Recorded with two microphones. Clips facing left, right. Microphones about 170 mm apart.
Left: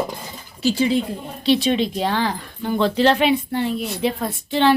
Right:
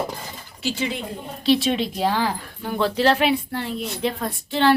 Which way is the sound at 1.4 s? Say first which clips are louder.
Left 2 dB; centre (ahead or behind).